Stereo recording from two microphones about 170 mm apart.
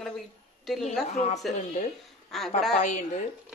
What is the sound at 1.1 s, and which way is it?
A woman's voice, 40° left (ahead or behind).